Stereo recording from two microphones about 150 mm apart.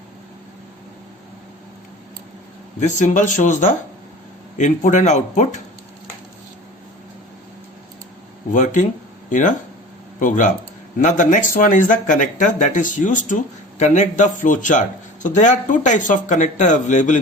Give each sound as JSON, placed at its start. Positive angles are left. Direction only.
{"t": 2.8, "sound": "speech", "side_deg": 55}
{"t": 8.5, "sound": "speech", "side_deg": 55}